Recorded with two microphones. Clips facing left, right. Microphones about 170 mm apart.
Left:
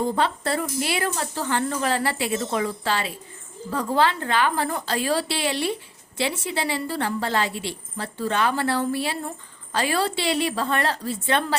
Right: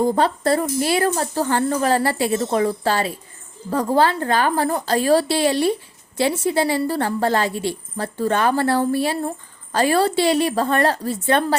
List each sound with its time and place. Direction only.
0.0 s a woman's voice: 40° right (ahead or behind)